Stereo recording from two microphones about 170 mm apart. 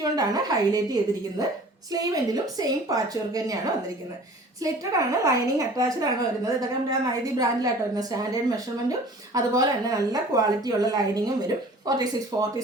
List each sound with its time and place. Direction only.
0.0 s a woman's voice: 20° right (ahead or behind)
4.6 s a woman's voice: 20° right (ahead or behind)